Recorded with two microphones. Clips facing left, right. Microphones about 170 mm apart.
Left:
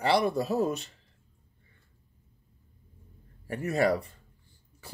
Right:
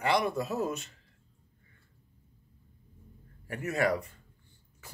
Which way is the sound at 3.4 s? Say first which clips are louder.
Left 3 dB; 30° left (ahead or behind).